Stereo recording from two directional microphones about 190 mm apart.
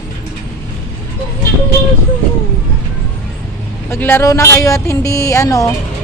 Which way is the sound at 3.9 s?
10° left (ahead or behind).